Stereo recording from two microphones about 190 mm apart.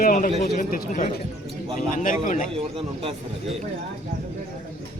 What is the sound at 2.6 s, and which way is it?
Speech, 30° right (ahead or behind).